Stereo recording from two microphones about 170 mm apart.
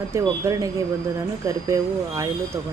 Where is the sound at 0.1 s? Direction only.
20° right (ahead or behind).